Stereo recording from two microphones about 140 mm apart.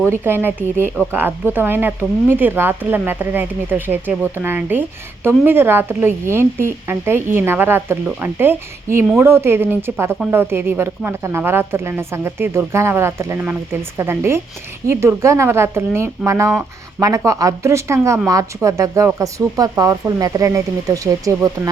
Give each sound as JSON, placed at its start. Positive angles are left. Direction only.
{"t": 0.0, "sound": "speech", "side_deg": -15}